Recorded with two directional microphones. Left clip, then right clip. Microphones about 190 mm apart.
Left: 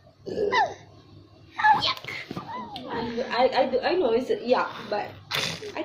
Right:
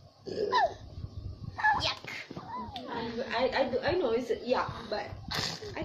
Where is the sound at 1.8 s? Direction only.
50° right (ahead or behind).